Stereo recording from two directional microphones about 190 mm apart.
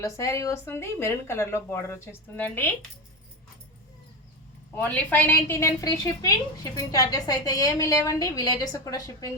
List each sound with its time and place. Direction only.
0.0 s speech: 15° left (ahead or behind)
4.7 s a woman's voice: 10° left (ahead or behind)